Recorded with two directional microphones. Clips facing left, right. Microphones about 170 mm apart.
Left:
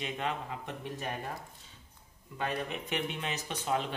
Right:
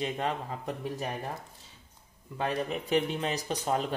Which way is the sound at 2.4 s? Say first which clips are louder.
Right 4 dB; 35° right (ahead or behind).